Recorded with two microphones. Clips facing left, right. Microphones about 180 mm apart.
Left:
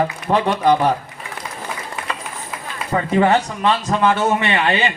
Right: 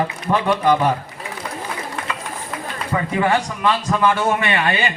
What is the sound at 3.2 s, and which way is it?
A man's voice, 25° left (ahead or behind).